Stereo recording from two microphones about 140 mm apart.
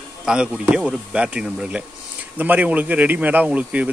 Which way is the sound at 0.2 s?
5° right (ahead or behind).